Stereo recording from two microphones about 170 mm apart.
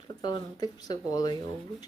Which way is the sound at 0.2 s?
25° left (ahead or behind).